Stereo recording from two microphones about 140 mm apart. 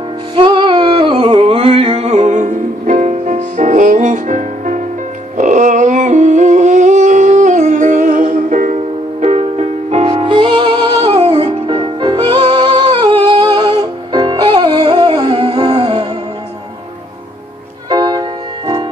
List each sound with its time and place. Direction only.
0.4 s a sound: 35° right (ahead or behind); by 8.7 s 65° right (ahead or behind)
9.2 s music: 50° right (ahead or behind)
17.8 s music: 30° right (ahead or behind)